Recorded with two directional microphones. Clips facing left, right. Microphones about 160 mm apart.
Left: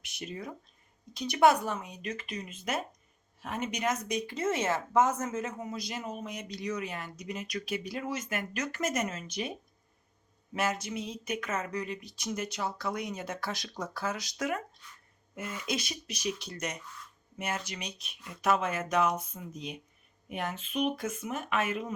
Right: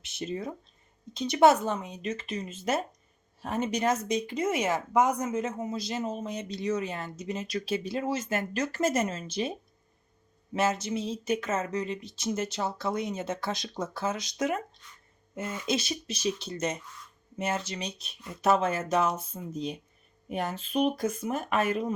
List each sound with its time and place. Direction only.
0.0 s speech: 25° right (ahead or behind)